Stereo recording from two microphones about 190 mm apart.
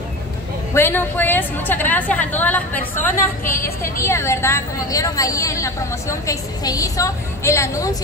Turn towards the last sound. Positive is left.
turn(degrees=15)  # may be behind; listen again after turning